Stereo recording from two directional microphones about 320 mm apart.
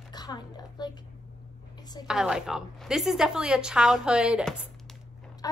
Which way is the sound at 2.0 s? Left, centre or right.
Centre.